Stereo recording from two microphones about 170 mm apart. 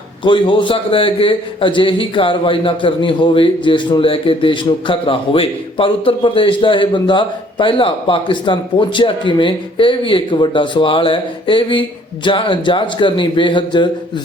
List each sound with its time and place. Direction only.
0.3 s a man's voice: 30° left (ahead or behind)